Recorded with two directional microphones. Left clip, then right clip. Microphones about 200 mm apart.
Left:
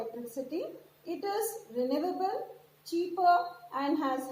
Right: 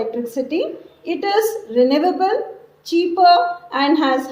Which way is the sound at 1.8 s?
35° right (ahead or behind).